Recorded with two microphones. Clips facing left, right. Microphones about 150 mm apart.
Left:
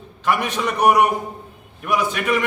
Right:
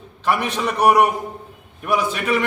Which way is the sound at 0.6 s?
5° right (ahead or behind).